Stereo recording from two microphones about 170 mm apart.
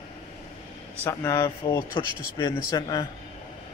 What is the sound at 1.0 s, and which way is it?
Speech, 20° left (ahead or behind).